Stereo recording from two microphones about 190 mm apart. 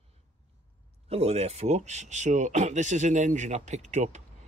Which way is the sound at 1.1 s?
35° right (ahead or behind).